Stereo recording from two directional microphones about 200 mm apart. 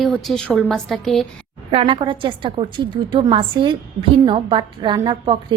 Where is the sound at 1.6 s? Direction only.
25° right (ahead or behind).